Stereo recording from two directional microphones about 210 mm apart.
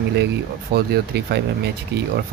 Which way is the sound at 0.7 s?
50° right (ahead or behind).